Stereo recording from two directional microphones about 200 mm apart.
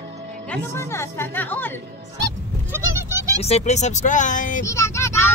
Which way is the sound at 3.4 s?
35° left (ahead or behind).